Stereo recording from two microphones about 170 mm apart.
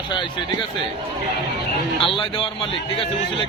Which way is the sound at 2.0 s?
30° left (ahead or behind).